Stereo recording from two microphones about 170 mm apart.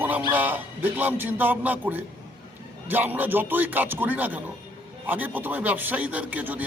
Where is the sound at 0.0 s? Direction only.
10° right (ahead or behind).